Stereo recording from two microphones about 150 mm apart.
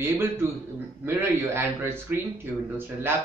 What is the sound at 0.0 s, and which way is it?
Speech, 15° right (ahead or behind).